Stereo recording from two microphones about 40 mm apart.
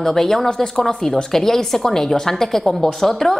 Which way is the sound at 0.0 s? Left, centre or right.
Centre.